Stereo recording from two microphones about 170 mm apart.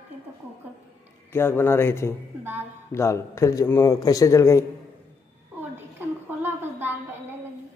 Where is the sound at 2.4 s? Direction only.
10° right (ahead or behind).